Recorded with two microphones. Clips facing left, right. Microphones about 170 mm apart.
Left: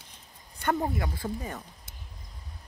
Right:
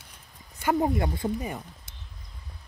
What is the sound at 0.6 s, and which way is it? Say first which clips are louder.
Speech: right 4 dB; 10° right (ahead or behind).